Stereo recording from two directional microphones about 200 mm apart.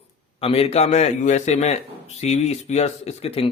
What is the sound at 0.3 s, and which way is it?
Speech, 30° left (ahead or behind).